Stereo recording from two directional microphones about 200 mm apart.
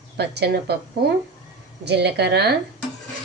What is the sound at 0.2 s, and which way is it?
Speech, 55° right (ahead or behind).